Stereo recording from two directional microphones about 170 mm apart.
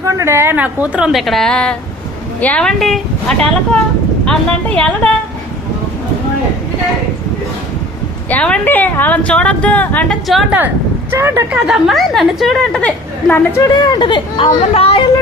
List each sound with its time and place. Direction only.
0.0 s a woman's voice: 15° right (ahead or behind); by 5.1 s 5° left (ahead or behind)
8.3 s a woman's voice: 10° left (ahead or behind); by 15.0 s 35° left (ahead or behind)